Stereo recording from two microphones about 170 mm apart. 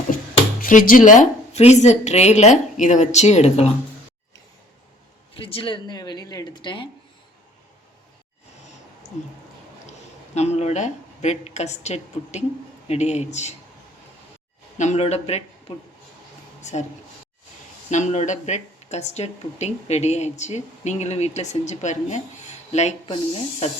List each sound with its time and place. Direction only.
0.6 s speech: 55° left (ahead or behind)
5.3 s speech: 35° left (ahead or behind)
10.3 s speech: 40° left (ahead or behind)
14.8 s speech: 40° left (ahead or behind)
16.6 s speech: 45° left (ahead or behind)
17.9 s speech: 45° left (ahead or behind)